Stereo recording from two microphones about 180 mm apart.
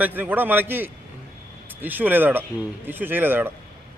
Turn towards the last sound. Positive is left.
turn(degrees=-10)  # may be behind; listen again after turning